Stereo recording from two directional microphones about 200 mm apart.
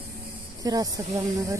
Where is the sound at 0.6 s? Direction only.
20° right (ahead or behind).